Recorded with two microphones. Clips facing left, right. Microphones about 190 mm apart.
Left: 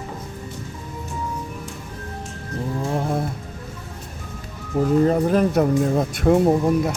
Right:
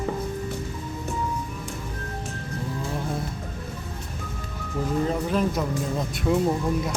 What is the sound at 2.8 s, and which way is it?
Music, 45° left (ahead or behind).